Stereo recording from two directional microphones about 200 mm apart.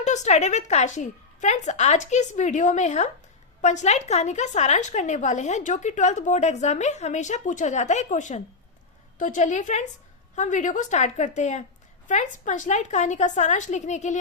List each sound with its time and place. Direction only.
0.0 s a woman's voice: 35° left (ahead or behind)